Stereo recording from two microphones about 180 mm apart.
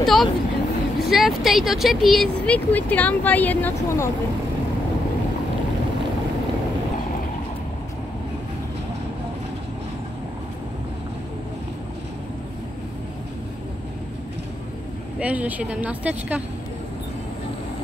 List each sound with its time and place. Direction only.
0.0 s vehicle: centre (ahead or behind)
0.9 s speech: centre (ahead or behind)
15.1 s speech: 10° right (ahead or behind)